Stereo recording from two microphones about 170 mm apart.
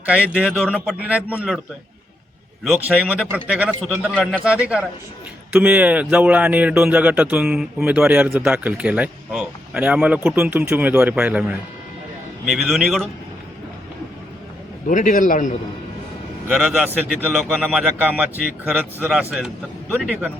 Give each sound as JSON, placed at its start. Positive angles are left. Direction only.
{"t": 0.3, "sound": "a man's voice", "side_deg": -5}
{"t": 2.6, "sound": "a man's voice", "side_deg": -10}
{"t": 14.8, "sound": "a man's voice", "side_deg": 50}
{"t": 16.5, "sound": "a man's voice", "side_deg": -5}
{"t": 17.3, "sound": "a man's voice", "side_deg": 0}